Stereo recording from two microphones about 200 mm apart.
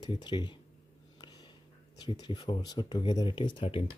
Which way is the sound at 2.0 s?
20° left (ahead or behind).